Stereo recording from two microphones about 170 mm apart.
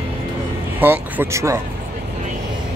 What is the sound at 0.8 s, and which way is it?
Speech, 10° right (ahead or behind).